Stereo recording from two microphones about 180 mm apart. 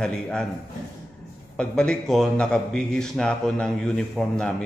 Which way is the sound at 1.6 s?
5° left (ahead or behind).